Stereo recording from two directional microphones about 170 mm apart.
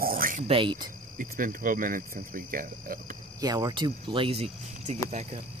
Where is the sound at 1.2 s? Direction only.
55° right (ahead or behind).